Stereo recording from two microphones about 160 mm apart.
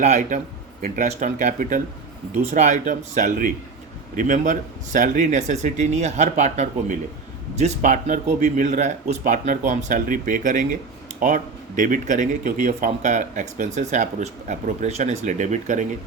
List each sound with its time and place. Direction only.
0.0 s speech: 45° right (ahead or behind)